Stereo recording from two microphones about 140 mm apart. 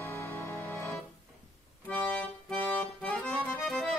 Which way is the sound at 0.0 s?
15° left (ahead or behind).